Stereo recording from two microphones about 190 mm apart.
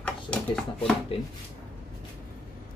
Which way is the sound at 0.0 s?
5° left (ahead or behind).